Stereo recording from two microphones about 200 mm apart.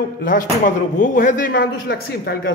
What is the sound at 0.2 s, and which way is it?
A man's voice, 45° left (ahead or behind).